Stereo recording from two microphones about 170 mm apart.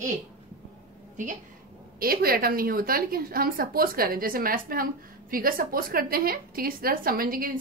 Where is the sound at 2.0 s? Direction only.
60° right (ahead or behind).